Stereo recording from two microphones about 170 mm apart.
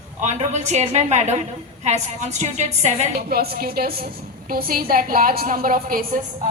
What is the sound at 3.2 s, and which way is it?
A woman's voice, 65° right (ahead or behind).